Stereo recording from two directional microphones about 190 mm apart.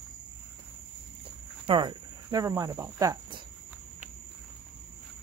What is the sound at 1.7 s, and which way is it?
Speech, 25° right (ahead or behind).